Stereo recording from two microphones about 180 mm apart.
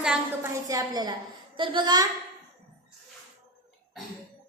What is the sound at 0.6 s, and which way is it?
A woman's voice, 20° right (ahead or behind).